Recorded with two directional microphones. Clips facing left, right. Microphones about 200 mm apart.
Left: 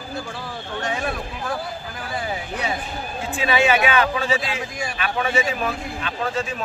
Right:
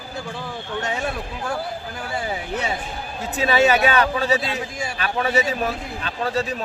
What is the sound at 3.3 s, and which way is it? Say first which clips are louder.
Speech: right 2 dB; 40° right (ahead or behind).